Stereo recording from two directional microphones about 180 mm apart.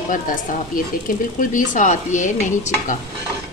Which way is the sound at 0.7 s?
50° left (ahead or behind).